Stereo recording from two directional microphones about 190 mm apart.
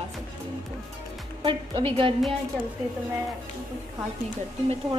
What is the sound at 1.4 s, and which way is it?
Speech, 30° right (ahead or behind).